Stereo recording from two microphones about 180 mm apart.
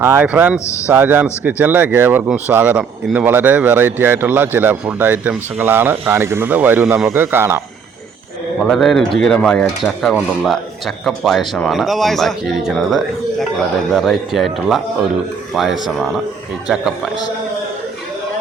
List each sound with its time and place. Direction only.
0.0 s speech: 10° right (ahead or behind)
8.6 s speech: centre (ahead or behind)